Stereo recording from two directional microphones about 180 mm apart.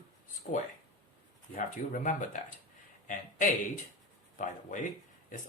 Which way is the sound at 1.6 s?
45° left (ahead or behind).